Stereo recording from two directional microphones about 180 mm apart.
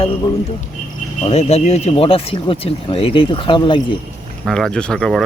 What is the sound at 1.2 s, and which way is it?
Speech, 35° left (ahead or behind).